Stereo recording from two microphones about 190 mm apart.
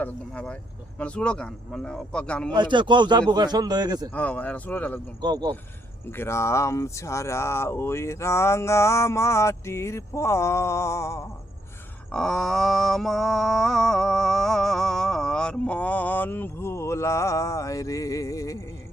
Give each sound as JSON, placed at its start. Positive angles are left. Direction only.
{"t": 0.0, "sound": "a sound", "side_deg": 5}
{"t": 2.6, "sound": "a man's voice", "side_deg": -25}
{"t": 4.1, "sound": "speech", "side_deg": 10}
{"t": 5.2, "sound": "a man's voice", "side_deg": -20}
{"t": 6.1, "sound": "speech", "side_deg": 15}
{"t": 12.1, "sound": "a sound", "side_deg": 0}